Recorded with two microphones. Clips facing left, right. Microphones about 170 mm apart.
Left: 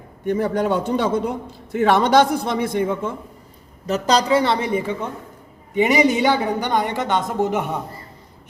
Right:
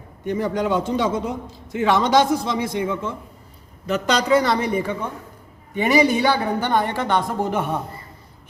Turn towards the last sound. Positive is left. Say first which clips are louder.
# left 1 dB
turn(degrees=20)  # may be behind; listen again after turning